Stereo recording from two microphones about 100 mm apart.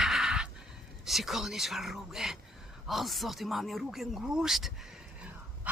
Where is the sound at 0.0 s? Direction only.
5° right (ahead or behind).